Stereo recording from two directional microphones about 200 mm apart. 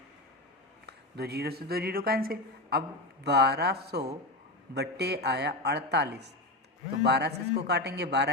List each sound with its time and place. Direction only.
0.9 s a man's voice: 55° right (ahead or behind)